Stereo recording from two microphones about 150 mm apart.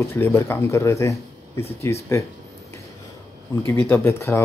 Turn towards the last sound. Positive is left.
turn(degrees=15)  # may be behind; listen again after turning